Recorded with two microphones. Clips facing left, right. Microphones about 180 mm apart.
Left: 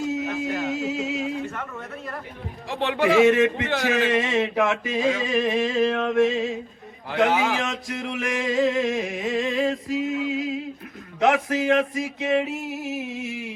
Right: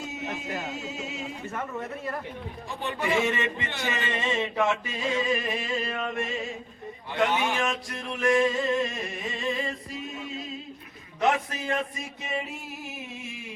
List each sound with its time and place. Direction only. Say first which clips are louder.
0.7 s music: left 9 dB; 90° left
2.6 s speech: left 8 dB; 90° left
7.1 s a sound: left 5 dB; 90° left
11.2 s speech: left 5 dB; 90° left